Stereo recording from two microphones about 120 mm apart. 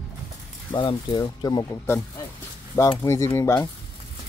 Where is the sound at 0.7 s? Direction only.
40° left (ahead or behind); by 3.6 s 20° left (ahead or behind).